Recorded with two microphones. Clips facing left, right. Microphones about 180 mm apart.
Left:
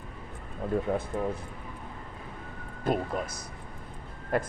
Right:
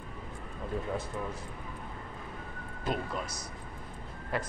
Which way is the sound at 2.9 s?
55° left (ahead or behind).